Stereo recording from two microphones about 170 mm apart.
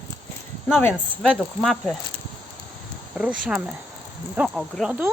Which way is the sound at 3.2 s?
5° right (ahead or behind).